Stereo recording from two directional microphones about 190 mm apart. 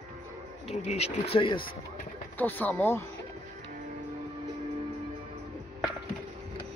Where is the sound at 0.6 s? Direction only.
35° left (ahead or behind).